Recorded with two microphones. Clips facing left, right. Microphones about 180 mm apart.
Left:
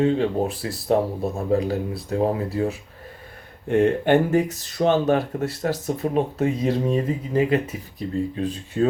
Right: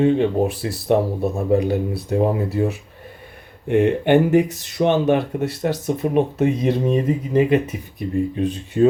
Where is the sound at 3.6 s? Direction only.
15° right (ahead or behind).